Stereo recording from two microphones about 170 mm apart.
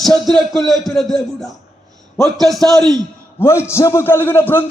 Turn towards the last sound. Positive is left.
turn(degrees=10)  # may be behind; listen again after turning